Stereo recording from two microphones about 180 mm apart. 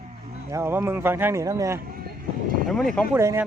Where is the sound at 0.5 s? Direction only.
15° right (ahead or behind).